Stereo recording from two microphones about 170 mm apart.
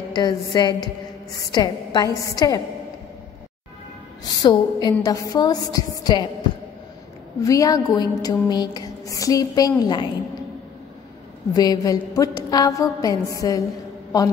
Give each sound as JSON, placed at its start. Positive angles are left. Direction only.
{"t": 0.1, "sound": "a woman's voice", "side_deg": 25}
{"t": 4.4, "sound": "a woman's voice", "side_deg": 25}
{"t": 7.4, "sound": "a woman's voice", "side_deg": 20}
{"t": 11.5, "sound": "a woman's voice", "side_deg": 20}